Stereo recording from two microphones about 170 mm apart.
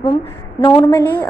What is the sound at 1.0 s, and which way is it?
Speech, 10° left (ahead or behind).